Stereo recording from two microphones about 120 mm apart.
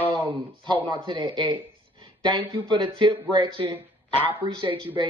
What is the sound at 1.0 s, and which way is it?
Speech, 40° right (ahead or behind).